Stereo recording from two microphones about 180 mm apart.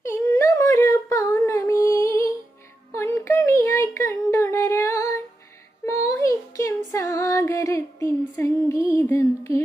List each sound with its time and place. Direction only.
0.0 s a sound: 15° left (ahead or behind)
2.9 s child singing: 15° left (ahead or behind)
5.8 s female singing: 15° left (ahead or behind)
8.7 s music: 15° left (ahead or behind)